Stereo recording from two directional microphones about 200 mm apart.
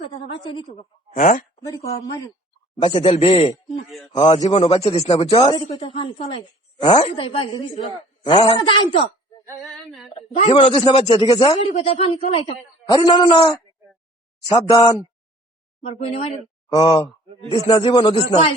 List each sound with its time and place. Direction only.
0.0 s a woman's voice: 20° left (ahead or behind)
0.7 s a man's voice: 40° left (ahead or behind)
1.6 s a woman's voice: 15° left (ahead or behind)
2.8 s a man's voice: 30° left (ahead or behind)
9.6 s a sound: centre (ahead or behind)
10.3 s speech: 30° left (ahead or behind)
16.7 s speech: 20° left (ahead or behind)